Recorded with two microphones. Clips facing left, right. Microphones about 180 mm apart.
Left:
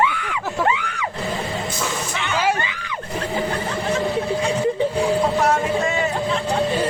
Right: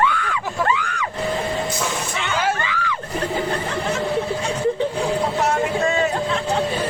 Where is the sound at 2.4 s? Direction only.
15° left (ahead or behind).